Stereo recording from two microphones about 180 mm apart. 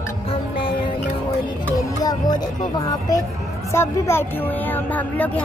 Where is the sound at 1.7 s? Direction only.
20° left (ahead or behind).